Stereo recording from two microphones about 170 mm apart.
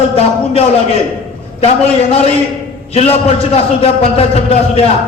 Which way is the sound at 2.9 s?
40° left (ahead or behind).